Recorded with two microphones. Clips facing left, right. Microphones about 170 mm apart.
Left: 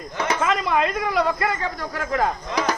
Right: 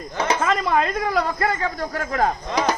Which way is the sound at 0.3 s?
35° right (ahead or behind).